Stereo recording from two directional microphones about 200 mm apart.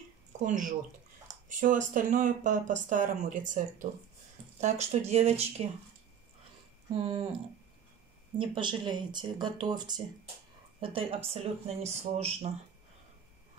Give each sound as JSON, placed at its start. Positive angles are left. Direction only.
{"t": 0.4, "sound": "speech", "side_deg": -35}
{"t": 6.9, "sound": "speech", "side_deg": -25}
{"t": 8.4, "sound": "speech", "side_deg": -25}